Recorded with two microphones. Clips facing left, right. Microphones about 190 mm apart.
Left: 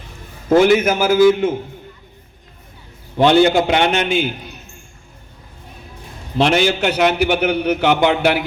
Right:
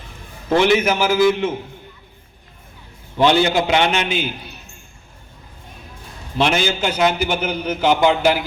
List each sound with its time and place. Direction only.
0.5 s a man's voice: 40° left (ahead or behind)
3.2 s a man's voice: 50° left (ahead or behind)
6.4 s a man's voice: 60° left (ahead or behind)